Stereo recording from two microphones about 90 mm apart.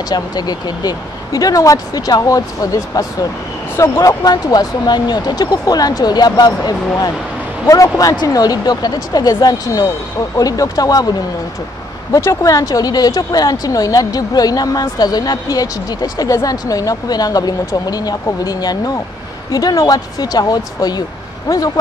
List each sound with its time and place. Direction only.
0.1 s speech: 50° left (ahead or behind)
3.7 s speech: 30° left (ahead or behind)
4.2 s speech: 45° left (ahead or behind)
12.1 s speech: 35° left (ahead or behind)